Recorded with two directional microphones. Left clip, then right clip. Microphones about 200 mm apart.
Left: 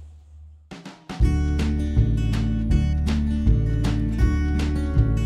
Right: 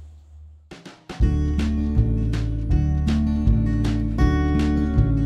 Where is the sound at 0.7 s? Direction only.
Centre (ahead or behind).